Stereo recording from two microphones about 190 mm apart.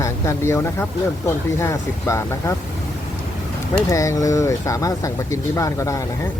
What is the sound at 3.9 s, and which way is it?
Speech, 15° left (ahead or behind).